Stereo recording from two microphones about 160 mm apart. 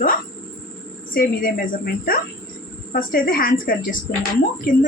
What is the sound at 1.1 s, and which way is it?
A woman's voice, 60° left (ahead or behind).